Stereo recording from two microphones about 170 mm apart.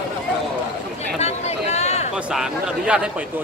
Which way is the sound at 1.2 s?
40° left (ahead or behind).